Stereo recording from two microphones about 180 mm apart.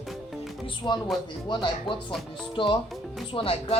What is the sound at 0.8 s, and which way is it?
Speech, 25° left (ahead or behind).